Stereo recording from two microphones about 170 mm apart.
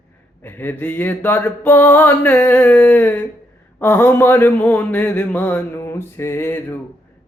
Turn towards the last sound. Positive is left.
turn(degrees=15)  # may be behind; listen again after turning